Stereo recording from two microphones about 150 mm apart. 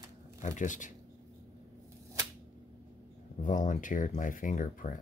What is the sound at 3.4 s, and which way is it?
Speech, 60° left (ahead or behind).